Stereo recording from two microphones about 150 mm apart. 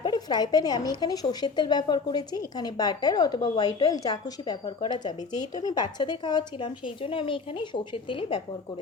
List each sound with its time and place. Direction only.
0.0 s a woman's voice: 30° left (ahead or behind)